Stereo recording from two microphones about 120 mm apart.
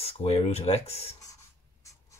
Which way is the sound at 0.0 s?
50° left (ahead or behind).